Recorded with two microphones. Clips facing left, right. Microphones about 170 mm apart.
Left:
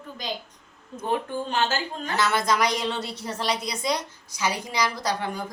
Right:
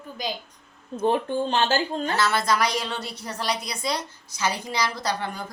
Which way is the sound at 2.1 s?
15° left (ahead or behind).